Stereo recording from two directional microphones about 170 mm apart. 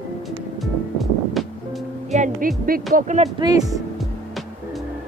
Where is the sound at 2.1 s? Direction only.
50° right (ahead or behind).